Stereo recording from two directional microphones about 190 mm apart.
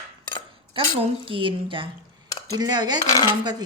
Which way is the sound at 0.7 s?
30° right (ahead or behind).